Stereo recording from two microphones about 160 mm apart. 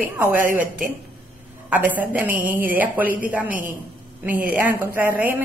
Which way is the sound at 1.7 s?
10° right (ahead or behind).